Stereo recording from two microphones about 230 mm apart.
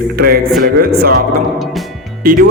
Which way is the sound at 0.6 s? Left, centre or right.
Right.